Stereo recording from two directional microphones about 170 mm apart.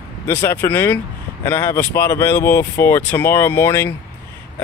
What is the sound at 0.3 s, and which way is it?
Speech, 15° left (ahead or behind).